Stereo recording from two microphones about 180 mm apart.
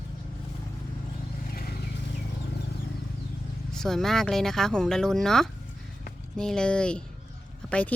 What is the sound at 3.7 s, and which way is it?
Speech, centre (ahead or behind).